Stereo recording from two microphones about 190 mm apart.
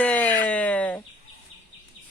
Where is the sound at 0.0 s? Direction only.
10° left (ahead or behind).